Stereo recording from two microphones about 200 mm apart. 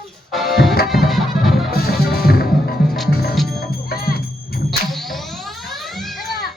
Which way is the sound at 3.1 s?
50° left (ahead or behind).